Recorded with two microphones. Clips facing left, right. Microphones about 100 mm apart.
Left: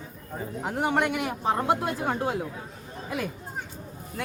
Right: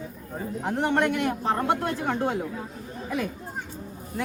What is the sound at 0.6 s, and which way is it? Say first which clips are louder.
A man's voice: right 2 dB; 5° left (ahead or behind).